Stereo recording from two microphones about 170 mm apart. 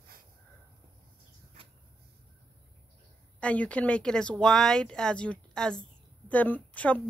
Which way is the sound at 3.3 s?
5° left (ahead or behind).